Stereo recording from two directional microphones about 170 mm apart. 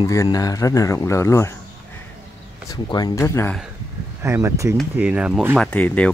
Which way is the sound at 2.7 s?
25° left (ahead or behind).